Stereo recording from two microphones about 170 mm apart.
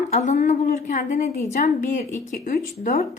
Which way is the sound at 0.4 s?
50° left (ahead or behind).